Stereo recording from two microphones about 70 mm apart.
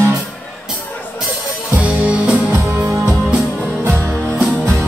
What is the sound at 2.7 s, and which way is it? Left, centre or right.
Music, right.